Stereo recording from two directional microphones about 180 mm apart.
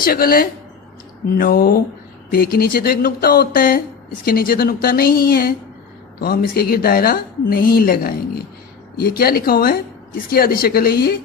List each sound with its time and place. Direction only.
0.0 s speech: 55° left (ahead or behind)